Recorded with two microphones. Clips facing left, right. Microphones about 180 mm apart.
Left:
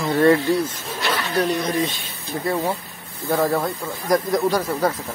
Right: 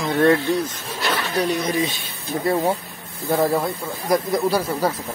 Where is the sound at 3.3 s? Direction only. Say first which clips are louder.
Right 1 dB; 10° right (ahead or behind).